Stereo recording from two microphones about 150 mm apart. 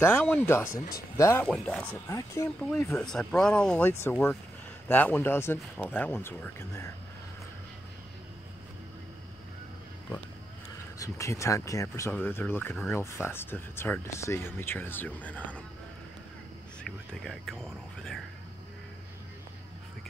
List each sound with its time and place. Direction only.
0.0 s speech: 10° left (ahead or behind)
0.7 s speech: 80° left
1.1 s speech: 20° left (ahead or behind)
1.4 s speech: 5° left (ahead or behind)
2.0 s speech: 20° left (ahead or behind)
2.9 s speech: 5° left (ahead or behind)
11.0 s speech: 20° left (ahead or behind)
16.8 s speech: 5° left (ahead or behind)